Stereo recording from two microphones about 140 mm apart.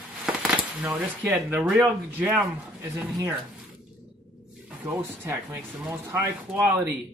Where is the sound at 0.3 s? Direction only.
5° right (ahead or behind).